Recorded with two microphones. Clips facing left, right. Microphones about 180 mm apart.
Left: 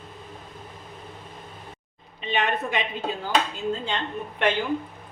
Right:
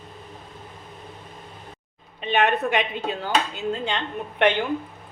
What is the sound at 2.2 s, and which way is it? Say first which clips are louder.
Speech: right 4 dB; 60° right (ahead or behind).